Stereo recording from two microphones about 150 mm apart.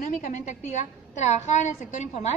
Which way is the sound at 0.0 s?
55° left (ahead or behind).